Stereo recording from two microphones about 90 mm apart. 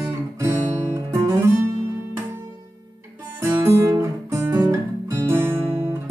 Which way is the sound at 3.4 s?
30° right (ahead or behind).